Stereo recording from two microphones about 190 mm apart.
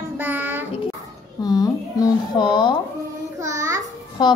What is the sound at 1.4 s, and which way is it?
Music, 20° left (ahead or behind).